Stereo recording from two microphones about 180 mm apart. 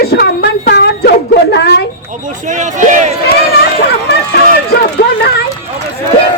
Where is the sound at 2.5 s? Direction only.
45° right (ahead or behind).